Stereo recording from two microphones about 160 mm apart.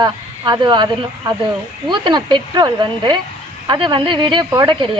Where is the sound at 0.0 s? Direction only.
25° right (ahead or behind).